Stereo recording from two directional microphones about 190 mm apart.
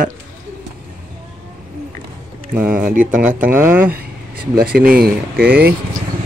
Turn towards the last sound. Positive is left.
turn(degrees=-50)  # may be behind; listen again after turning